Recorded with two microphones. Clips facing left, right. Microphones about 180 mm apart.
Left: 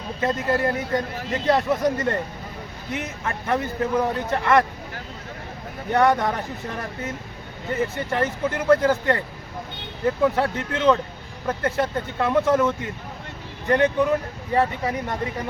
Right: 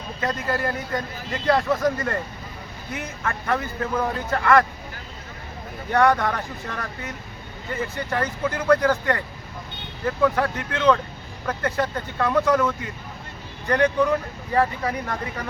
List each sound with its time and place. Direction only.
0.2 s speech: 25° left (ahead or behind)
5.9 s speech: 20° left (ahead or behind)